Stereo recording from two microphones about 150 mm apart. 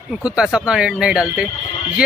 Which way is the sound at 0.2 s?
5° right (ahead or behind).